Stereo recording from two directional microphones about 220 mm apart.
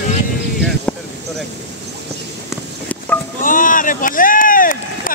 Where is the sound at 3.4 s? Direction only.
40° left (ahead or behind).